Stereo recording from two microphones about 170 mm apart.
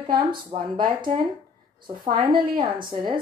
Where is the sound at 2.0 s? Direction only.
55° right (ahead or behind).